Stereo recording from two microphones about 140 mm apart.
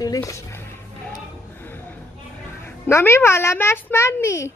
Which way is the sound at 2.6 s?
20° left (ahead or behind).